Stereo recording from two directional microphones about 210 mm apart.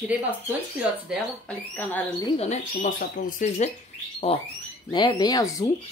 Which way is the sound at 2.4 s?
35° left (ahead or behind).